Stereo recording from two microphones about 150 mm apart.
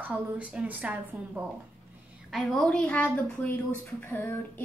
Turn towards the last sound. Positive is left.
turn(degrees=15)  # may be behind; listen again after turning